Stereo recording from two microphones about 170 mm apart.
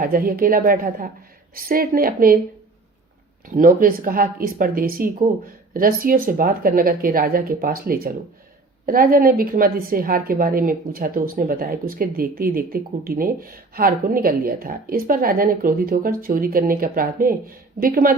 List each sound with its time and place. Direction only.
0.0 s a woman's voice: 55° right (ahead or behind)
3.4 s a woman's voice: 50° right (ahead or behind)